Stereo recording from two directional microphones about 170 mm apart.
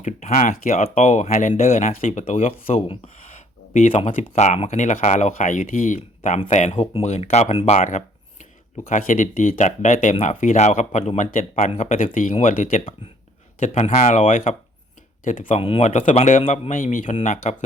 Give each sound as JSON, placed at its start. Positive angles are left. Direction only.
{"t": 0.0, "sound": "speech", "side_deg": 45}
{"t": 2.8, "sound": "speech", "side_deg": 30}
{"t": 3.8, "sound": "speech", "side_deg": 45}
{"t": 15.4, "sound": "speech", "side_deg": 35}